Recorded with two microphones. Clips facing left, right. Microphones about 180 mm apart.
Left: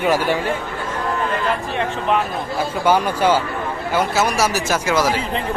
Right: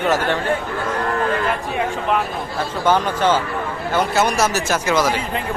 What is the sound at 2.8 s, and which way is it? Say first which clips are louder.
Speech: even; 10° left (ahead or behind).